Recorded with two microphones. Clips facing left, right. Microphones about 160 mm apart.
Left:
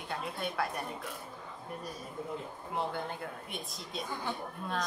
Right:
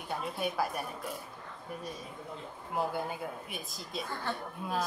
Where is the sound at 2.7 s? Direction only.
5° right (ahead or behind).